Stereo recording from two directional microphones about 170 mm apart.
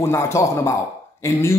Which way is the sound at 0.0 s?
15° left (ahead or behind).